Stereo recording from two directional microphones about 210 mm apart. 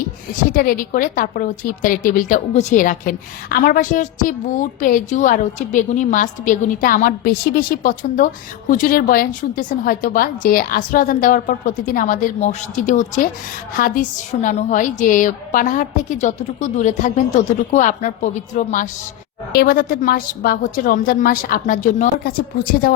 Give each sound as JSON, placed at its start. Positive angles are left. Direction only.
{"t": 0.5, "sound": "a woman's voice", "side_deg": 40}